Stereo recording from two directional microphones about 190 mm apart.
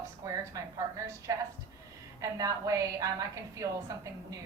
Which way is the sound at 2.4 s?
15° right (ahead or behind).